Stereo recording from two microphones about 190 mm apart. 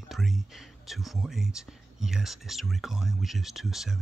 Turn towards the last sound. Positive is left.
turn(degrees=0)  # may be behind; listen again after turning